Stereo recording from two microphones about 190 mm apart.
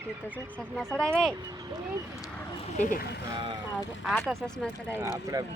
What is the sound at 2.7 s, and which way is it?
Speech, 40° left (ahead or behind).